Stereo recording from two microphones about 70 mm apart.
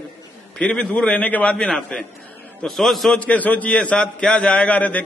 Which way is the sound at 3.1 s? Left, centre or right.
Centre.